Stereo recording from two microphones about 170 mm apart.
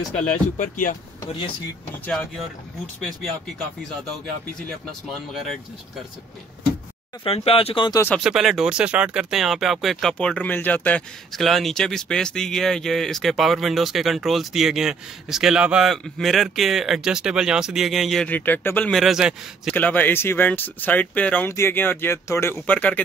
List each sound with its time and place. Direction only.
0.6 s speech: 50° left (ahead or behind)
3.0 s speech: centre (ahead or behind)
5.3 s speech: centre (ahead or behind)
7.2 s speech: 35° left (ahead or behind)
8.2 s speech: centre (ahead or behind)
19.7 s speech: 10° left (ahead or behind)